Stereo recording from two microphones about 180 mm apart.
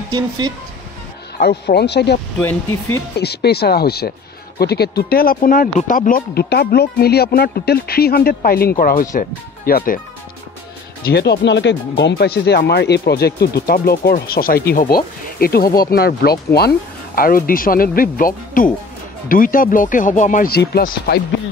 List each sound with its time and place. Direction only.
1.4 s speech: 65° left (ahead or behind)
3.2 s speech: 65° left (ahead or behind)
11.1 s speech: 65° left (ahead or behind); by 20.4 s 45° left (ahead or behind)
20.5 s speech: 60° left (ahead or behind)